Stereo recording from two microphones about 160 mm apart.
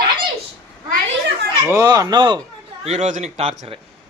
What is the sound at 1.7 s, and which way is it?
Speech, 20° right (ahead or behind).